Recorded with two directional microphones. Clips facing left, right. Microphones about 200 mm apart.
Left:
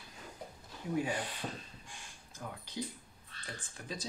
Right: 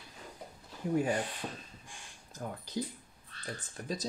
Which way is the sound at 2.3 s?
40° right (ahead or behind).